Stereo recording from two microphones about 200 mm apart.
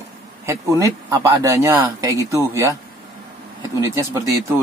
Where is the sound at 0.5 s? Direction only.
15° right (ahead or behind).